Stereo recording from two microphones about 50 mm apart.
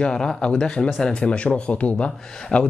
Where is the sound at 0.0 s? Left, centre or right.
Centre.